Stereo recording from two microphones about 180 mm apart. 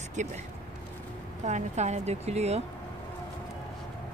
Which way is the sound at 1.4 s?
40° right (ahead or behind).